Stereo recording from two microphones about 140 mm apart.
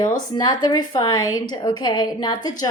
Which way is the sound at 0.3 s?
25° left (ahead or behind).